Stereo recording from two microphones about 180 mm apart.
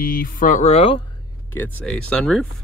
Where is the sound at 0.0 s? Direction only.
55° left (ahead or behind); by 1.0 s 35° left (ahead or behind).